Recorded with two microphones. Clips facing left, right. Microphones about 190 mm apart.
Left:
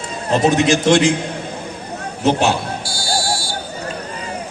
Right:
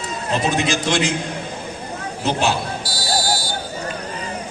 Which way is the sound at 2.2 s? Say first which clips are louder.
Left 5 dB; 55° left (ahead or behind).